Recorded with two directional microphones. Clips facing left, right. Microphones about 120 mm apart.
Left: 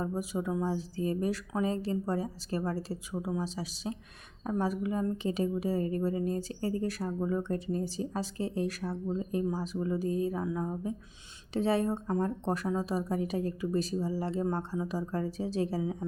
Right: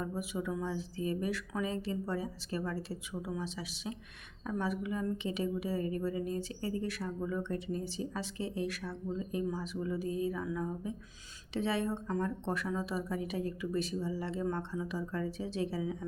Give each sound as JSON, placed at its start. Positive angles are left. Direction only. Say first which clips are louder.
{"t": 0.0, "sound": "speech", "louder": "left 4 dB", "side_deg": 35}